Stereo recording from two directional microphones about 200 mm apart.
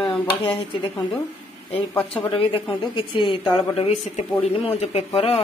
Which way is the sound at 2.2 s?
25° left (ahead or behind).